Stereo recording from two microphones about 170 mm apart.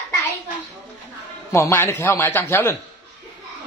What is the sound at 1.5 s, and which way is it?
Speech, 15° left (ahead or behind).